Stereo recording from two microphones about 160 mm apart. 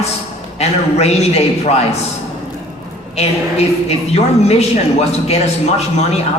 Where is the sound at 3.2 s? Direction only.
40° left (ahead or behind).